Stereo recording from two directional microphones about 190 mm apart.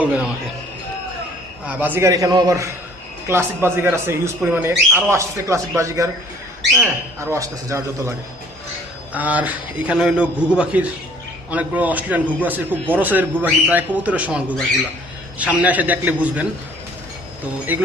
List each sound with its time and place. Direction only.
0.0 s speech: 5° right (ahead or behind)
1.6 s speech: 10° right (ahead or behind)
9.1 s speech: 10° right (ahead or behind)
17.7 s speech: 10° right (ahead or behind)